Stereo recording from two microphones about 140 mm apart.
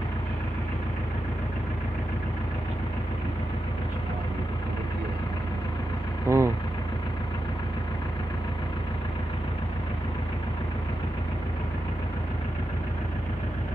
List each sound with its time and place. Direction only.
6.2 s vehicle: 20° right (ahead or behind)